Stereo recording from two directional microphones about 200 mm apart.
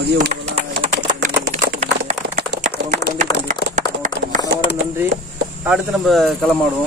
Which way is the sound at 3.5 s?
40° right (ahead or behind).